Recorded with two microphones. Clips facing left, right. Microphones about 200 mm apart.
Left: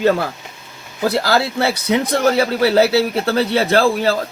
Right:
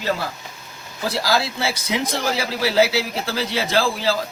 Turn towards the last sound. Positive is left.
turn(degrees=60)  # may be behind; listen again after turning